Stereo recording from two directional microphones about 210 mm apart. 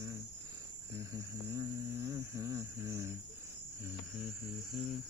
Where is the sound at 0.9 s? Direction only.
15° right (ahead or behind).